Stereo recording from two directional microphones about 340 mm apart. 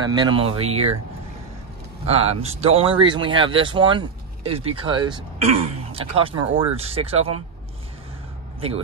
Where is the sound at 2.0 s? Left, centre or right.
Centre.